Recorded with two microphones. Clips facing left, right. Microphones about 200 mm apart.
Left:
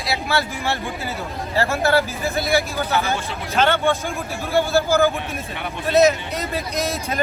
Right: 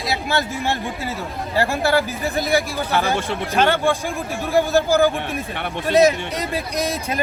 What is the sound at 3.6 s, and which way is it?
Speech, 15° right (ahead or behind).